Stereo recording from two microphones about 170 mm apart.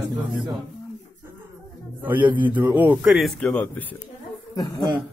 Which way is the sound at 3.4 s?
5° left (ahead or behind).